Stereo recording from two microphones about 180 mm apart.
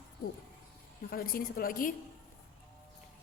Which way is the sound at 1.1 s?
55° left (ahead or behind).